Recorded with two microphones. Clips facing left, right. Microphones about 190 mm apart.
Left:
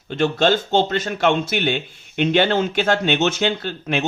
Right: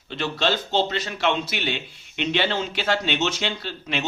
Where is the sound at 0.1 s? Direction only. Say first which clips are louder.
Left 7 dB; 50° left (ahead or behind).